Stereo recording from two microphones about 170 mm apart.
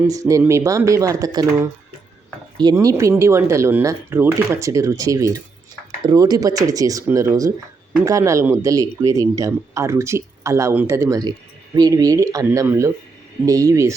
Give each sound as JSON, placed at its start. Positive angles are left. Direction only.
{"t": 0.1, "sound": "speech", "side_deg": -20}